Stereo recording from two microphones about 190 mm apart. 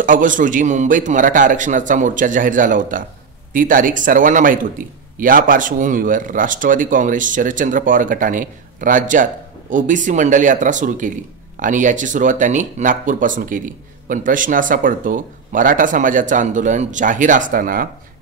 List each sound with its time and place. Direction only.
0.0 s a man's voice: 45° right (ahead or behind)